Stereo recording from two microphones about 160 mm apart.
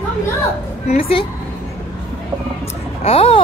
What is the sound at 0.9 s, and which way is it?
Speech, 35° left (ahead or behind).